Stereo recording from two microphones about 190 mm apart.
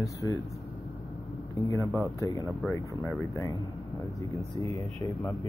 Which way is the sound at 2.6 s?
10° left (ahead or behind).